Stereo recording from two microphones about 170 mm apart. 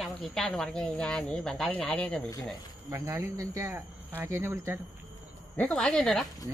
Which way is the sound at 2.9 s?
15° right (ahead or behind).